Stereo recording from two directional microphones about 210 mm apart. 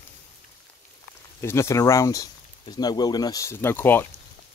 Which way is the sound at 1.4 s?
15° left (ahead or behind).